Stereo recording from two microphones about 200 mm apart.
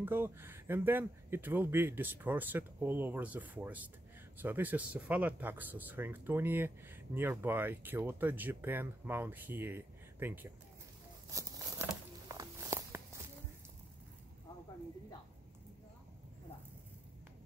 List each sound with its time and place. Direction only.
0.0 s speech: 10° right (ahead or behind)
11.2 s a sound: 15° right (ahead or behind)
12.3 s walk: 15° right (ahead or behind)